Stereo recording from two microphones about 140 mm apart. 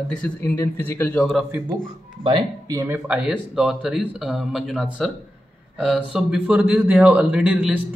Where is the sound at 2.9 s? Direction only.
10° right (ahead or behind).